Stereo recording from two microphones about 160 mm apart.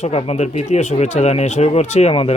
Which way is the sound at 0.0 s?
45° left (ahead or behind).